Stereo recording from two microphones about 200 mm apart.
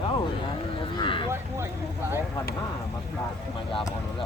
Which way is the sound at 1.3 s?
10° right (ahead or behind).